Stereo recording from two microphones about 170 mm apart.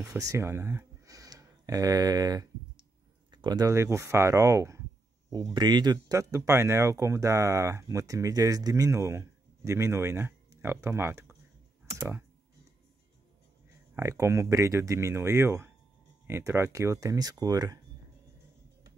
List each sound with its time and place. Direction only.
0.0 s speech: 15° right (ahead or behind)
11.8 s typing: 15° right (ahead or behind)
13.9 s speech: 15° right (ahead or behind)